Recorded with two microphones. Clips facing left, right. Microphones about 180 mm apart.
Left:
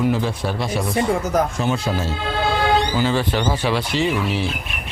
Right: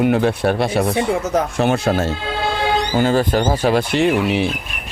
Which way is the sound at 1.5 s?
70° right (ahead or behind).